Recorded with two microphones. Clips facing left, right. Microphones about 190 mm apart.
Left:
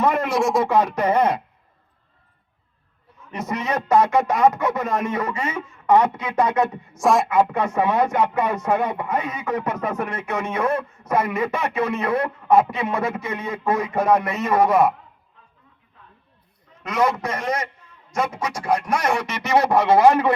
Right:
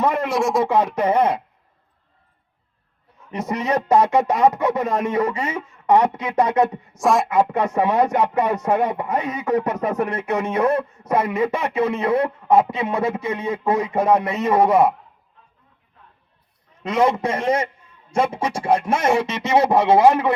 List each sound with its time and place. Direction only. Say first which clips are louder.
0.3 s speech: even; centre (ahead or behind)
0.6 s speech: right 1 dB; 30° right (ahead or behind)
3.3 s a sound: right 3 dB; 35° right (ahead or behind)
7.0 s speech: even; centre (ahead or behind)
7.5 s a sound: right 2 dB; 40° right (ahead or behind)
16.8 s speech: right 3 dB; 25° right (ahead or behind)
20.1 s a man's voice: even; 5° right (ahead or behind)